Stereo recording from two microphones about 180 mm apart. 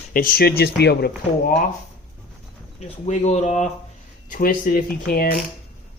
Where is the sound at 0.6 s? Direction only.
65° left (ahead or behind).